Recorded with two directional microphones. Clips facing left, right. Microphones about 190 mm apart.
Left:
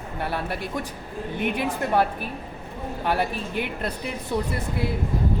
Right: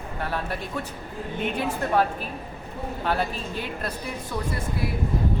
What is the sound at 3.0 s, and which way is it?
Speech, 15° left (ahead or behind).